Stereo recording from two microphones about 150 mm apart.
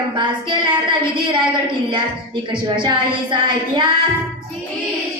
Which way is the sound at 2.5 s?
30° right (ahead or behind).